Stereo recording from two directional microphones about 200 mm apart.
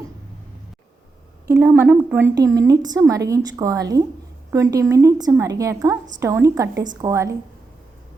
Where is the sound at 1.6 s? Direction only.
10° right (ahead or behind).